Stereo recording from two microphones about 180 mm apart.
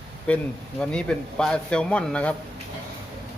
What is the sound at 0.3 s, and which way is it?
Speech, 5° left (ahead or behind).